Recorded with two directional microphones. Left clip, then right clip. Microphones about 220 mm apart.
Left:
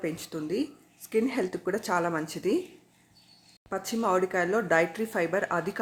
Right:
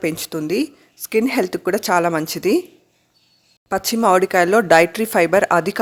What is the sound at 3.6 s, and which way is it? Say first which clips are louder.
A woman's voice: right 12 dB; 45° right (ahead or behind).